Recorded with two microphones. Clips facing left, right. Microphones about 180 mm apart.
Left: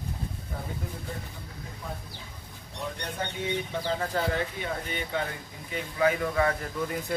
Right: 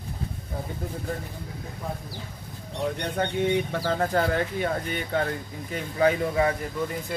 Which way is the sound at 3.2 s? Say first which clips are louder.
Right 7 dB; 60° right (ahead or behind).